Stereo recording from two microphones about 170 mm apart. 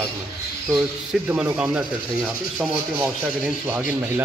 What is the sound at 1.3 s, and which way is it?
Speech, 5° right (ahead or behind).